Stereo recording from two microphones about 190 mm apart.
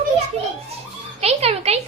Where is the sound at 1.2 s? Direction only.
35° right (ahead or behind).